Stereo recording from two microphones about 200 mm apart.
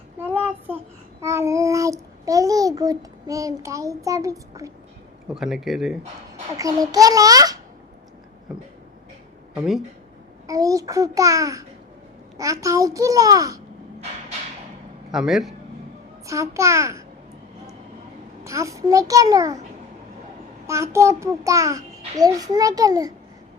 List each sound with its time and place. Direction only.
0.2 s child singing: 10° right (ahead or behind)
1.2 s a child's voice: 15° right (ahead or behind)
5.3 s speech: centre (ahead or behind)
6.6 s a child's voice: 15° right (ahead or behind)
9.6 s speech: centre (ahead or behind)
10.4 s a child's voice: 15° right (ahead or behind)
15.1 s speech: centre (ahead or behind)
16.2 s a child's voice: 15° right (ahead or behind)
18.4 s a child's voice: 15° right (ahead or behind)
20.7 s a child's voice: 15° right (ahead or behind)